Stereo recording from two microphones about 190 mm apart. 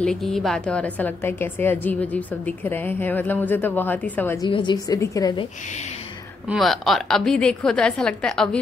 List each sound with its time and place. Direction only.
0.0 s a woman's voice: 5° left (ahead or behind)
4.4 s a woman's voice: 25° left (ahead or behind)
6.5 s a woman's voice: centre (ahead or behind)